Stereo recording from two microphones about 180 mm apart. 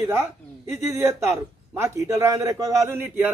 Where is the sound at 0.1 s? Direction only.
15° right (ahead or behind).